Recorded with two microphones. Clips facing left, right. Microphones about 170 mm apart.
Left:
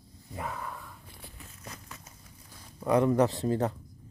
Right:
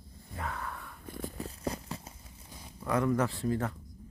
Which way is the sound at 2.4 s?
15° right (ahead or behind).